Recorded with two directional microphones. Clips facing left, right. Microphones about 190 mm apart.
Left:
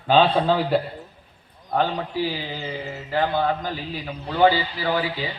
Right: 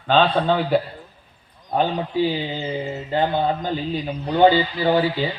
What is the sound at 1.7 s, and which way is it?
Speech, 20° right (ahead or behind).